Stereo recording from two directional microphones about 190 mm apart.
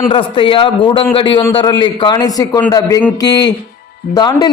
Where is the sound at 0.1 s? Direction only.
25° left (ahead or behind).